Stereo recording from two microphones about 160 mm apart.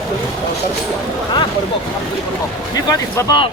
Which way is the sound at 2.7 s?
20° left (ahead or behind).